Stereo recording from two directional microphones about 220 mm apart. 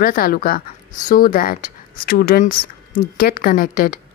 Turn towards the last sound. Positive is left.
turn(degrees=40)  # may be behind; listen again after turning